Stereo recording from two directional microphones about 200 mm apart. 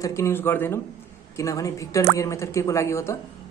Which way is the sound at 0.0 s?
15° left (ahead or behind).